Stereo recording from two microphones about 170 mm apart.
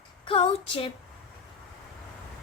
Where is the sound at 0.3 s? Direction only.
35° left (ahead or behind).